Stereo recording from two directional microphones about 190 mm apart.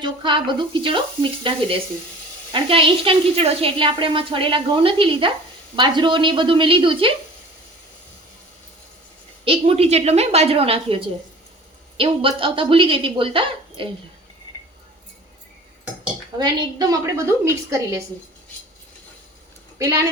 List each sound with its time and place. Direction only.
0.0 s a woman's voice: 25° right (ahead or behind)
9.4 s a woman's voice: 30° right (ahead or behind)
11.9 s a woman's voice: 30° right (ahead or behind)
16.4 s a woman's voice: 20° right (ahead or behind)
19.8 s a woman's voice: 15° right (ahead or behind)